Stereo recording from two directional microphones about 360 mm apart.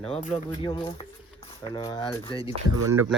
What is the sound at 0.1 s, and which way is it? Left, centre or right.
Speech, centre.